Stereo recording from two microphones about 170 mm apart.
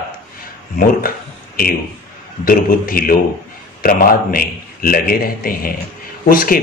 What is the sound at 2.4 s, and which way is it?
A man's voice, 55° left (ahead or behind).